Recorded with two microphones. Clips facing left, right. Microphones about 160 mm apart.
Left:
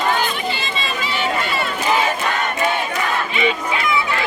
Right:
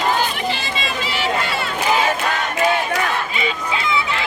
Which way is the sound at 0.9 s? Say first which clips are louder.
Even; 90° right.